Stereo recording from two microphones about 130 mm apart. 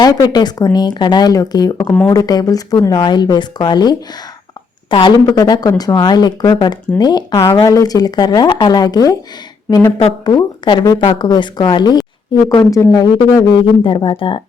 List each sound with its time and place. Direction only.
0.0 s speech: 30° left (ahead or behind)
10.2 s speech: 35° left (ahead or behind)
13.5 s speech: 40° left (ahead or behind)